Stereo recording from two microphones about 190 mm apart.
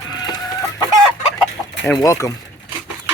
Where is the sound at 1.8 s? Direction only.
15° left (ahead or behind).